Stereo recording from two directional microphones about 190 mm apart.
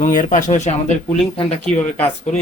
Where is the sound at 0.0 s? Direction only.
45° left (ahead or behind).